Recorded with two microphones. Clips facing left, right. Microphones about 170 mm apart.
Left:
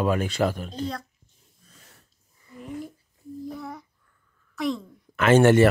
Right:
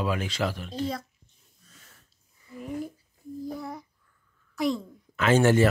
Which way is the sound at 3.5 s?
Centre (ahead or behind).